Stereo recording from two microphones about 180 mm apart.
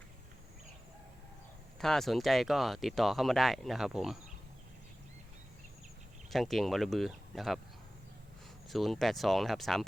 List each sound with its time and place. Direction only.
1.8 s speech: centre (ahead or behind)
6.3 s speech: centre (ahead or behind)
8.7 s speech: centre (ahead or behind)